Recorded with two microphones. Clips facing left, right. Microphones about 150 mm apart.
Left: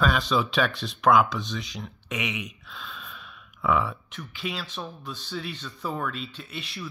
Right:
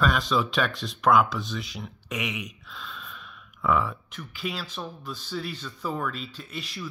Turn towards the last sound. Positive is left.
turn(degrees=0)  # may be behind; listen again after turning